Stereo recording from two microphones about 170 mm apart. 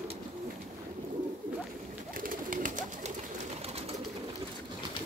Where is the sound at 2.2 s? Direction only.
55° right (ahead or behind).